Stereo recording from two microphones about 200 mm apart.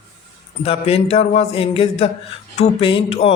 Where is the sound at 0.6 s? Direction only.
30° left (ahead or behind).